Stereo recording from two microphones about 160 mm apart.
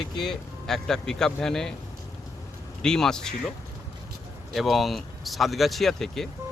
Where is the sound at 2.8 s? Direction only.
5° left (ahead or behind).